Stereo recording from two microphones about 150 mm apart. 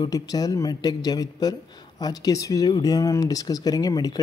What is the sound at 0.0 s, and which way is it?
Speech, 25° left (ahead or behind).